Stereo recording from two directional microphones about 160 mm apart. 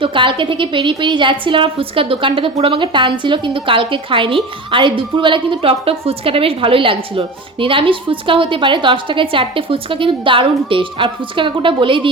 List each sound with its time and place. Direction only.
0.0 s a woman's voice: 30° right (ahead or behind)